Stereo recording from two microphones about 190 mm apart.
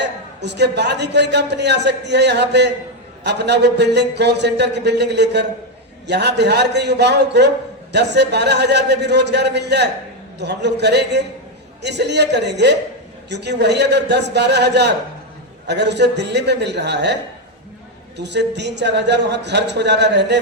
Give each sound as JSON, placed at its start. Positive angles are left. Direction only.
{"t": 0.0, "sound": "a man's voice", "side_deg": -65}
{"t": 18.2, "sound": "a man's voice", "side_deg": -65}